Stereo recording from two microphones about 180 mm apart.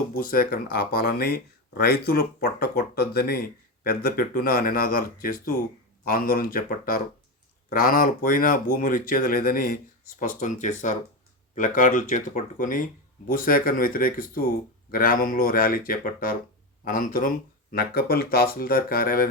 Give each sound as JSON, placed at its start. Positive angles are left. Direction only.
{"t": 0.2, "sound": "speech", "side_deg": 55}